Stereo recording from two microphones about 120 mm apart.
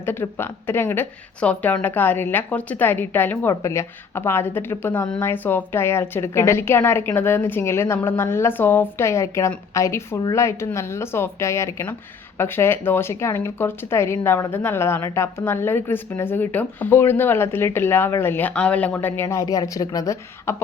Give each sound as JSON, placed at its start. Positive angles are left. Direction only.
{"t": 0.0, "sound": "a woman's voice", "side_deg": 20}